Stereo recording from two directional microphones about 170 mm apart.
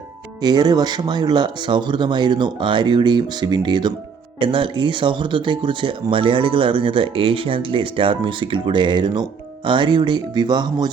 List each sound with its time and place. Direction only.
0.4 s speech: 25° right (ahead or behind)